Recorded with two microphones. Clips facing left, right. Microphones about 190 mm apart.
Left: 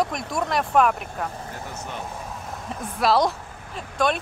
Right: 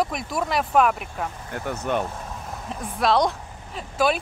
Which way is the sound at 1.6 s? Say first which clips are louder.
Right 14 dB; 65° right (ahead or behind).